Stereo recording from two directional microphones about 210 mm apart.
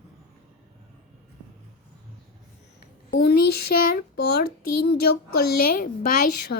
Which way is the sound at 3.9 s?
50° left (ahead or behind).